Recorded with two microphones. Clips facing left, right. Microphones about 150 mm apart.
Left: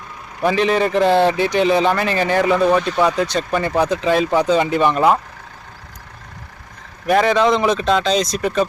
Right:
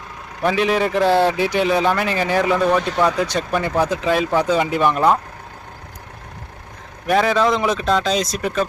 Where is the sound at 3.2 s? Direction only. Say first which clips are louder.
Left 1 dB; 10° right (ahead or behind).